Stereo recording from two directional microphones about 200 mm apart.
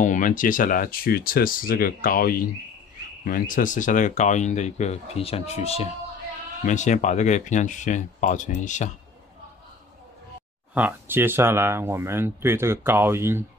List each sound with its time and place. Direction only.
0.0 s speech: 40° left (ahead or behind)
10.7 s speech: 10° right (ahead or behind)